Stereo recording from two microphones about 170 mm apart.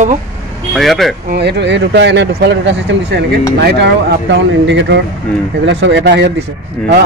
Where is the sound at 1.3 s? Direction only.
75° right (ahead or behind).